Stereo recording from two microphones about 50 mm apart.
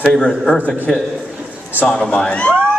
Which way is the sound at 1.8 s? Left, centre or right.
Centre.